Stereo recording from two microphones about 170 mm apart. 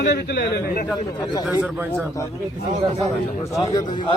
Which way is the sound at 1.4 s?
5° right (ahead or behind).